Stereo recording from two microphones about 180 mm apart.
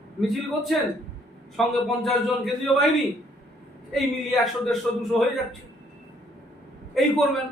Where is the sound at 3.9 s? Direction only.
Centre (ahead or behind).